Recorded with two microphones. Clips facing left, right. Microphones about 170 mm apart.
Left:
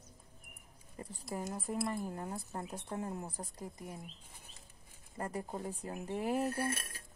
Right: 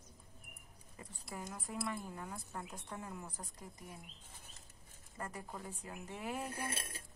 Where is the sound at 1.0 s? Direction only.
35° left (ahead or behind).